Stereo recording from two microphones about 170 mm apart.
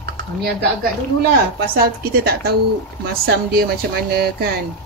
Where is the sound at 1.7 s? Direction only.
60° right (ahead or behind).